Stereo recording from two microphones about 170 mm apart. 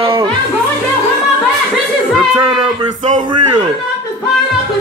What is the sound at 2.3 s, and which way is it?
Speech, 25° right (ahead or behind).